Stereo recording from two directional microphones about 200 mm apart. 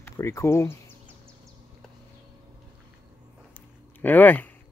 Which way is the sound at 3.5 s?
10° left (ahead or behind).